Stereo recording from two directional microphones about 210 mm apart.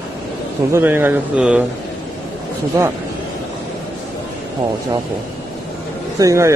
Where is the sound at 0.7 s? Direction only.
10° right (ahead or behind).